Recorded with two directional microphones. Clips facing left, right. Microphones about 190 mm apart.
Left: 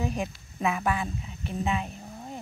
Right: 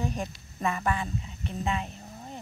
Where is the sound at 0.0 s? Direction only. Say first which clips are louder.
Left 2 dB; 5° left (ahead or behind).